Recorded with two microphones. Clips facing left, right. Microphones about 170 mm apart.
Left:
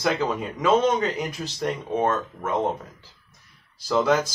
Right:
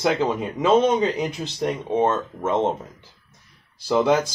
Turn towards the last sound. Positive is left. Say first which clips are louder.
# right 2 dB
turn(degrees=-20)  # may be behind; listen again after turning